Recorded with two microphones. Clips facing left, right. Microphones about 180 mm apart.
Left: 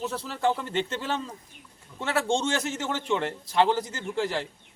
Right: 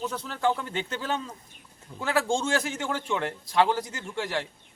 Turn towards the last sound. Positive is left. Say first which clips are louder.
# left 3 dB
turn(degrees=0)  # may be behind; listen again after turning